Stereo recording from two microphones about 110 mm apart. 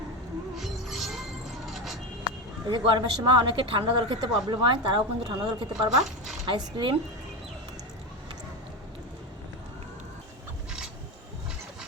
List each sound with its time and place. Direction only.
0.6 s music: centre (ahead or behind)
1.6 s a sound: centre (ahead or behind)
2.6 s speech: 45° right (ahead or behind)